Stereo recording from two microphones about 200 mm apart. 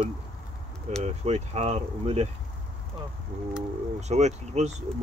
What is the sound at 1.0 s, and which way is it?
Speech, 35° right (ahead or behind).